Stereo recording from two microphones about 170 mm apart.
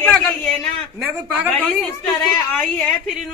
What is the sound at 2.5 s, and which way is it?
Speech, centre (ahead or behind).